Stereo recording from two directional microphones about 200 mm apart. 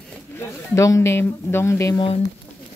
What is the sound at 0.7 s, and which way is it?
Speech, 15° left (ahead or behind).